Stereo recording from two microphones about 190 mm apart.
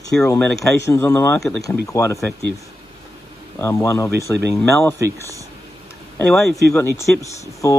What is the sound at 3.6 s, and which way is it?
Speech, 15° left (ahead or behind).